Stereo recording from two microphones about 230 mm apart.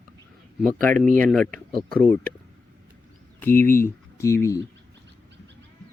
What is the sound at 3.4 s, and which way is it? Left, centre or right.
Speech, centre.